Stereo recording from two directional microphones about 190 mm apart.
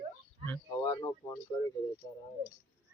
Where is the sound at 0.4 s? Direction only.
15° left (ahead or behind).